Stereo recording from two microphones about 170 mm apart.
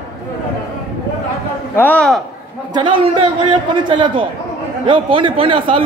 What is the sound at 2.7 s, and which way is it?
A man's voice, 30° right (ahead or behind).